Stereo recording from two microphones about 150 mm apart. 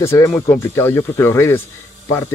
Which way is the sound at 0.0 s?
20° left (ahead or behind).